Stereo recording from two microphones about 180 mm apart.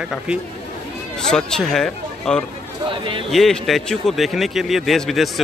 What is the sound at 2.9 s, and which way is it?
Speech, 30° right (ahead or behind).